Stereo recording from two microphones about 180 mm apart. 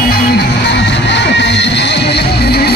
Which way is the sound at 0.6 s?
75° left (ahead or behind).